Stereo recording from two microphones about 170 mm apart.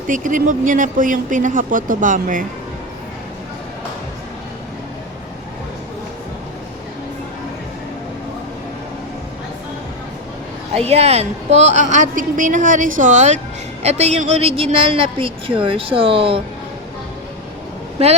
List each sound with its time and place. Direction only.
0.1 s a woman's voice: 50° right (ahead or behind)
10.8 s a woman's voice: 40° right (ahead or behind)